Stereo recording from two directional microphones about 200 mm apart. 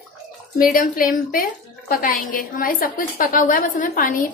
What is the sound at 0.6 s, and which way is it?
A woman's voice, 45° left (ahead or behind).